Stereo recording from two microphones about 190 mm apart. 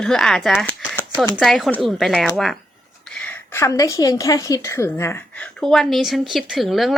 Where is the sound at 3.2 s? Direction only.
15° left (ahead or behind).